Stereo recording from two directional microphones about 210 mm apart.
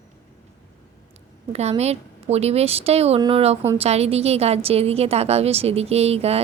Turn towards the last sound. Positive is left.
turn(degrees=-30)  # may be behind; listen again after turning